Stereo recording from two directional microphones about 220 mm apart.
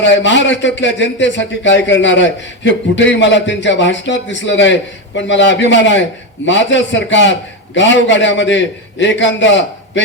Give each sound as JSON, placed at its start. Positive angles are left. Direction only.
{"t": 0.0, "sound": "a man's voice", "side_deg": 55}